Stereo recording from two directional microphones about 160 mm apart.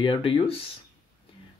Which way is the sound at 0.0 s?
30° left (ahead or behind).